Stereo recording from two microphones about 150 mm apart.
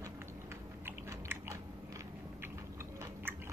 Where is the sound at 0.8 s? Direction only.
15° right (ahead or behind).